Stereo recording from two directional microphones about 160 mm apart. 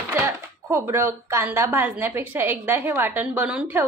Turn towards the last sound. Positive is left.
turn(degrees=-10)  # may be behind; listen again after turning